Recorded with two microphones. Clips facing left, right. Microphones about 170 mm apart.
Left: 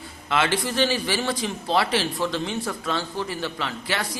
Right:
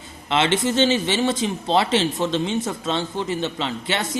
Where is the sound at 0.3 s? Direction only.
25° right (ahead or behind).